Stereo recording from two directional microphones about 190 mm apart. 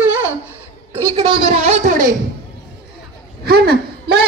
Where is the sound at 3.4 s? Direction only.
55° right (ahead or behind).